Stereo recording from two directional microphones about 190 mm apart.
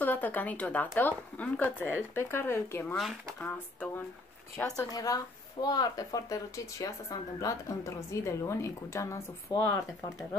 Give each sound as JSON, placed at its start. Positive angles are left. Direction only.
{"t": 0.0, "sound": "speech", "side_deg": 10}